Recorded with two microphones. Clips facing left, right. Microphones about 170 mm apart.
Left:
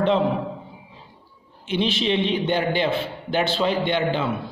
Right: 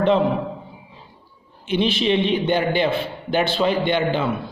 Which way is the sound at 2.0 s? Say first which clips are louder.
Right 3 dB; 5° right (ahead or behind).